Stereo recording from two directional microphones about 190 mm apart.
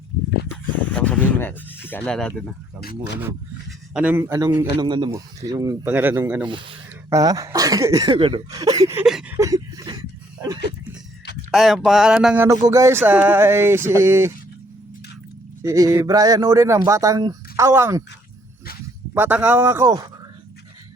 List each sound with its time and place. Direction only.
0.5 s a sound: 5° left (ahead or behind)
3.7 s speech: 5° right (ahead or behind)
6.4 s speech: 25° right (ahead or behind)
9.0 s a sound: centre (ahead or behind)
9.3 s chuckle: 15° right (ahead or behind)
11.5 s speech: centre (ahead or behind)
15.6 s speech: 15° right (ahead or behind)
19.1 s speech: 10° right (ahead or behind)